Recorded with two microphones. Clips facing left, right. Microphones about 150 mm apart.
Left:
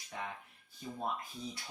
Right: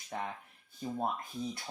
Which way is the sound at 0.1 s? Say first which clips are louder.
Right 4 dB; 45° right (ahead or behind).